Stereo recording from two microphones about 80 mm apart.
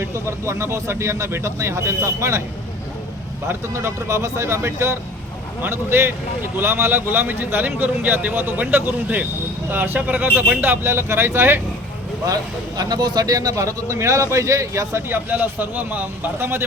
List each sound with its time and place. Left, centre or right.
0.0 s speech: right
3.5 s a man's voice: right
12.3 s speech: right
15.3 s a man's voice: right